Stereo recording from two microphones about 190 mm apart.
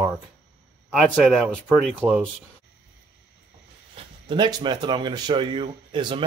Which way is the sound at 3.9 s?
25° right (ahead or behind).